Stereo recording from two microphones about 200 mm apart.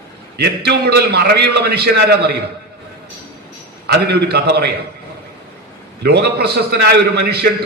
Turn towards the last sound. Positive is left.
turn(degrees=-55)  # may be behind; listen again after turning